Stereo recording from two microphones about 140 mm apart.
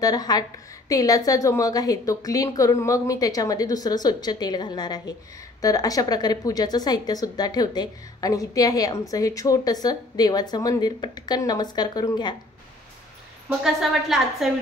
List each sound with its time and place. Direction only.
0.0 s a woman's voice: 30° left (ahead or behind)
14.0 s a woman's voice: 5° right (ahead or behind)